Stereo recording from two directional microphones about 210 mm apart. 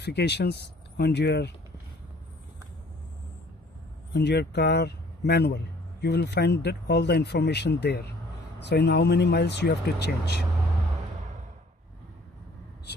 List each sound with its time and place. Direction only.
0.0 s speech: 50° left (ahead or behind)
4.1 s speech: 55° left (ahead or behind)